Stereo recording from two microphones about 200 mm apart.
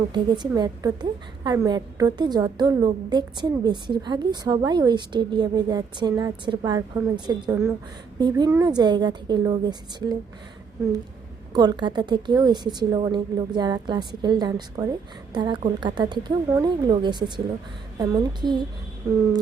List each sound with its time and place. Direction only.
0.1 s a woman's voice: 20° right (ahead or behind)
11.5 s a woman's voice: 20° right (ahead or behind)